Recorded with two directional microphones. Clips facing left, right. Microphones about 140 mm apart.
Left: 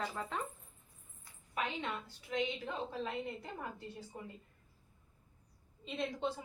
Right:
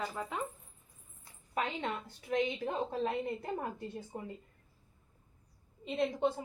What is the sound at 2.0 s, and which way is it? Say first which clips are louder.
Speech: right 6 dB; 50° right (ahead or behind).